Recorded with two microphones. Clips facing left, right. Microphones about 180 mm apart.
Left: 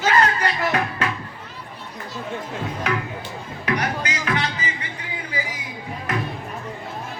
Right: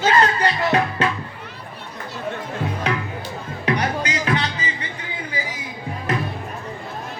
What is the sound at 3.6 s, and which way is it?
Music, 30° right (ahead or behind).